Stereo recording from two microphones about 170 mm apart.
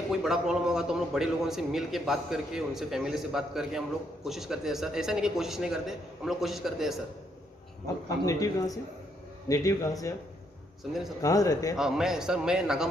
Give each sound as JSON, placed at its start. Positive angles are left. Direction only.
{"t": 0.1, "sound": "a man's voice", "side_deg": -5}
{"t": 7.8, "sound": "a man's voice", "side_deg": 20}
{"t": 10.8, "sound": "a man's voice", "side_deg": 0}
{"t": 11.2, "sound": "a man's voice", "side_deg": 20}
{"t": 11.7, "sound": "a man's voice", "side_deg": -5}